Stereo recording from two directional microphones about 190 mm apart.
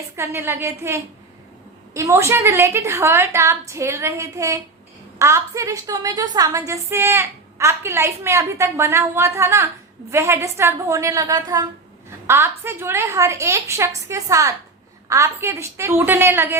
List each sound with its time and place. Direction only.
0.2 s a woman's voice: 15° right (ahead or behind)